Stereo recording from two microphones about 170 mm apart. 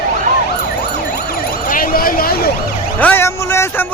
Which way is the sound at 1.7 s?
55° left (ahead or behind).